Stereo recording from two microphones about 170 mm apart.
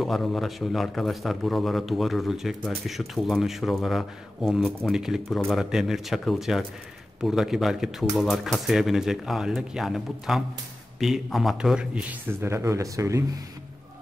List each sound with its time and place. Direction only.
0.0 s a man's voice: centre (ahead or behind); by 13.2 s 20° right (ahead or behind)